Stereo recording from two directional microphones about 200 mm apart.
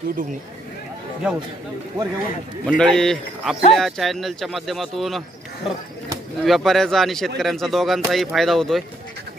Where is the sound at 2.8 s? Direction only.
5° left (ahead or behind).